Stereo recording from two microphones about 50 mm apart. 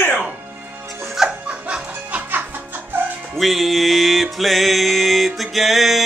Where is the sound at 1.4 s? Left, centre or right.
Right.